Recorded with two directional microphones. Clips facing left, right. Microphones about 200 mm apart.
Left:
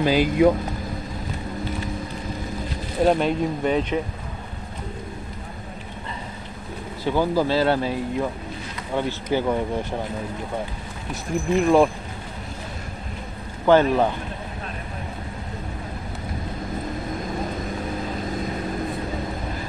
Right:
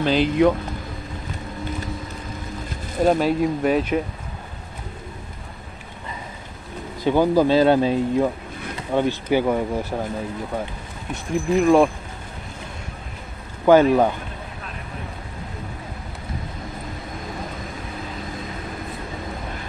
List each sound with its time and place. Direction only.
0.0 s speech: 10° left (ahead or behind)
3.0 s speech: 5° right (ahead or behind)
7.1 s speech: 15° right (ahead or behind)
11.5 s speech: centre (ahead or behind)
13.7 s speech: 10° right (ahead or behind)